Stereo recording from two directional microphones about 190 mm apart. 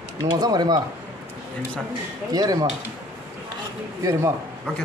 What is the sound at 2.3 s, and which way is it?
Speech, 20° right (ahead or behind).